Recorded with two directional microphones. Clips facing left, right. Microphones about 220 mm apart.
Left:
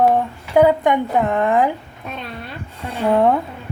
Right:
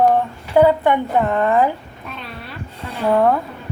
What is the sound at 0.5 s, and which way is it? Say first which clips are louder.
A woman's voice: even; 15° left (ahead or behind).